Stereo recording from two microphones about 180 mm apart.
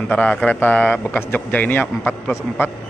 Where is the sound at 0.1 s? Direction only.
5° left (ahead or behind).